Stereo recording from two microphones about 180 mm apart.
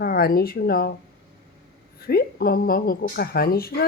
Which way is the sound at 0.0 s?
55° left (ahead or behind).